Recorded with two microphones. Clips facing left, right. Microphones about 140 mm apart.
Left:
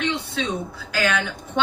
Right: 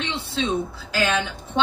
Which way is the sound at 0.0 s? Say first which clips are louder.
Left 1 dB; 25° right (ahead or behind).